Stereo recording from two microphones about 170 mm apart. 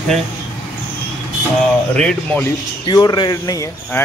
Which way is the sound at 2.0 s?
5° left (ahead or behind).